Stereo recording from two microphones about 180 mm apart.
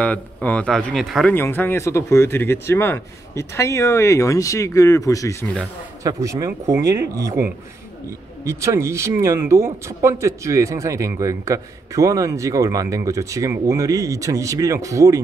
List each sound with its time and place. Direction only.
0.0 s a man's voice: 10° left (ahead or behind)
1.3 s speech: 10° left (ahead or behind)
6.0 s a man's voice: 20° right (ahead or behind)
8.5 s a man's voice: 15° right (ahead or behind)